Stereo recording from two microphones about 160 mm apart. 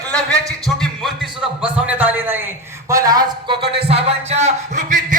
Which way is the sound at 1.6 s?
10° right (ahead or behind).